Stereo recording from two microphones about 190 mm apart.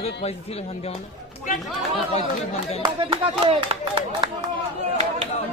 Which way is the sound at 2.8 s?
25° right (ahead or behind).